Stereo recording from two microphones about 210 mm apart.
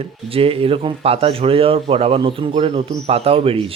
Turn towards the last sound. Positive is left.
turn(degrees=-25)  # may be behind; listen again after turning